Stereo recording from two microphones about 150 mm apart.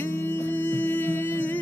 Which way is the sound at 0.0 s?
15° left (ahead or behind).